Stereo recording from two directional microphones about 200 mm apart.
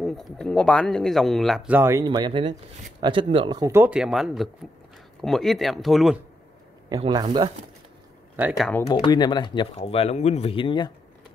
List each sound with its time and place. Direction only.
0.0 s speech: centre (ahead or behind)
6.9 s speech: 20° right (ahead or behind)
8.4 s speech: 5° right (ahead or behind)
8.9 s speech: 20° left (ahead or behind)